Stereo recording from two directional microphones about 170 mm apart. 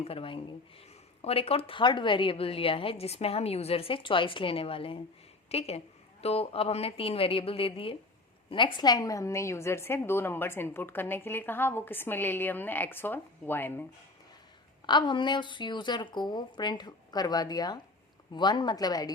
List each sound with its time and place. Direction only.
0.0 s a woman's voice: 35° left (ahead or behind); by 13.8 s 10° left (ahead or behind)
14.8 s a woman's voice: 25° left (ahead or behind)